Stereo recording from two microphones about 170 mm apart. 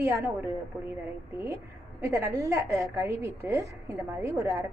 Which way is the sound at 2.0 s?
15° right (ahead or behind).